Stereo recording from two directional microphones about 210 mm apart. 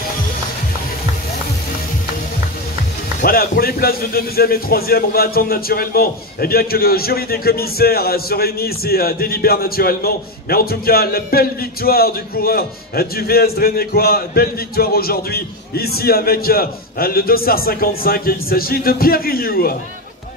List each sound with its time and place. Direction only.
3.2 s a man's voice: 45° left (ahead or behind)